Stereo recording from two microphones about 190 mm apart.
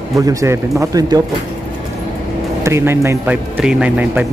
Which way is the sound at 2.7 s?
15° right (ahead or behind).